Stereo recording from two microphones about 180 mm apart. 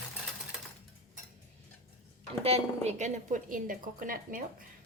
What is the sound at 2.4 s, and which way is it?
A woman's voice, 35° right (ahead or behind).